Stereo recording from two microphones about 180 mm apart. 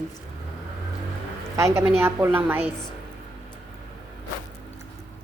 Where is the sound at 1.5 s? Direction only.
15° right (ahead or behind).